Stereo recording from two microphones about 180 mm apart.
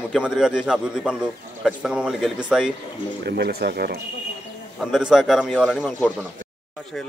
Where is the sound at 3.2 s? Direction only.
65° right (ahead or behind).